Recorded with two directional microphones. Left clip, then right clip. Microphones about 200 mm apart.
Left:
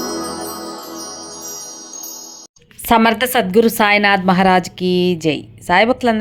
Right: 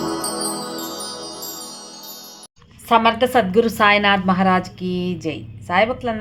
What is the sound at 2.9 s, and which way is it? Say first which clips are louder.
A woman's voice: left 2 dB; 30° left (ahead or behind).